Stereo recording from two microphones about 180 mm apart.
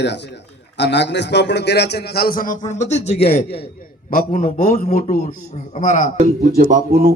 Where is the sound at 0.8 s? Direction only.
75° left (ahead or behind); by 3.2 s 40° left (ahead or behind).